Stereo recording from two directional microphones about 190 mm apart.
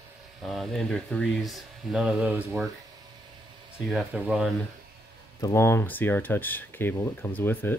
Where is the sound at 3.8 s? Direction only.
5° right (ahead or behind).